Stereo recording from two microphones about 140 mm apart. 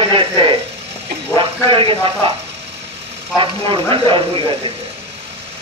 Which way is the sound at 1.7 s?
40° right (ahead or behind).